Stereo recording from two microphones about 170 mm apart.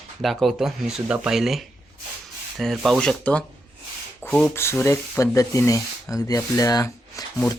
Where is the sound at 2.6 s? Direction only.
Centre (ahead or behind).